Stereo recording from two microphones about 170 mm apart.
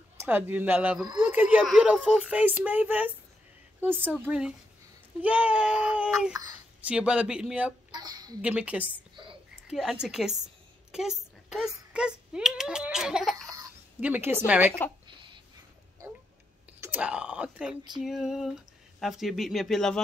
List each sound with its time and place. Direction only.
0.2 s a child's voice: 10° right (ahead or behind)
4.2 s a child's voice: 5° right (ahead or behind)
7.9 s a woman's voice: 25° right (ahead or behind)
8.4 s a child's voice: 10° right (ahead or behind)
9.1 s a sound: 30° right (ahead or behind)
9.7 s a child's voice: 5° right (ahead or behind)
15.0 s a sound: 30° right (ahead or behind)
16.8 s speech: 10° right (ahead or behind)